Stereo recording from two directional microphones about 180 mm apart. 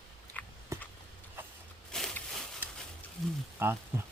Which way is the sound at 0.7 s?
15° right (ahead or behind).